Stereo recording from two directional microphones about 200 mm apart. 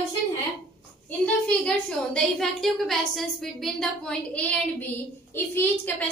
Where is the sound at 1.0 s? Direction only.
5° left (ahead or behind).